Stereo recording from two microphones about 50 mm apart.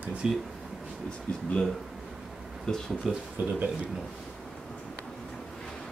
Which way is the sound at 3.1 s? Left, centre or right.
Centre.